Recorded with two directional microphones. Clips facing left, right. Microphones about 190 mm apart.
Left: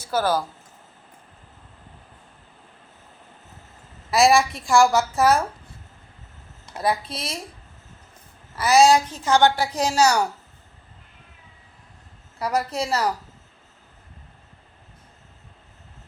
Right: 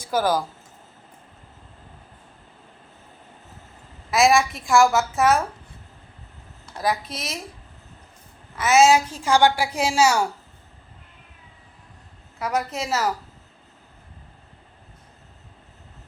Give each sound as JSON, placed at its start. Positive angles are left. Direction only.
{"t": 0.0, "sound": "speech", "side_deg": -10}
{"t": 4.1, "sound": "a woman's voice", "side_deg": 0}
{"t": 6.8, "sound": "a woman's voice", "side_deg": 30}
{"t": 8.8, "sound": "a woman's voice", "side_deg": -5}
{"t": 12.4, "sound": "a woman's voice", "side_deg": 0}